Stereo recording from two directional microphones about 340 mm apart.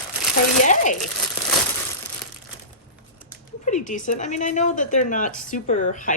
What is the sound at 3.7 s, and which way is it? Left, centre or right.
Speech, left.